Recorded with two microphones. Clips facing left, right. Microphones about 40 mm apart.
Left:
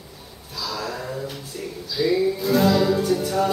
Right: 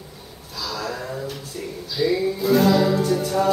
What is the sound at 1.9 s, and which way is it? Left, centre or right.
Music, centre.